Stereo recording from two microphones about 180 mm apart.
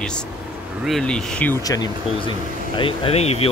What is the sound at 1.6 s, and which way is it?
Speech, 20° left (ahead or behind).